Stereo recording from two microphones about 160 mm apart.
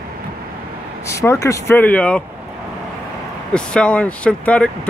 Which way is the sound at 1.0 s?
20° left (ahead or behind).